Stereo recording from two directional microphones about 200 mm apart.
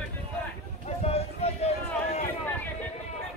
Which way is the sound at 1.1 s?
30° left (ahead or behind).